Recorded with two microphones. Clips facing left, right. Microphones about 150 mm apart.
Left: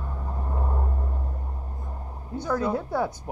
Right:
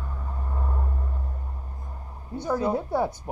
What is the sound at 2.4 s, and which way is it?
Speech, 10° right (ahead or behind).